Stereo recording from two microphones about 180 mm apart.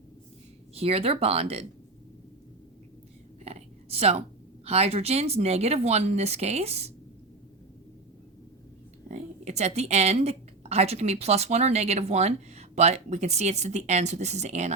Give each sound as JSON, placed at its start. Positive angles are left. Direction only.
{"t": 0.7, "sound": "a woman's voice", "side_deg": -35}
{"t": 3.4, "sound": "a sound", "side_deg": -35}
{"t": 4.6, "sound": "a woman's voice", "side_deg": -35}
{"t": 9.0, "sound": "a woman's voice", "side_deg": -40}